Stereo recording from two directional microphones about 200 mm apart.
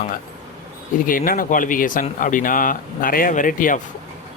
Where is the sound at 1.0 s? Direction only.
45° left (ahead or behind).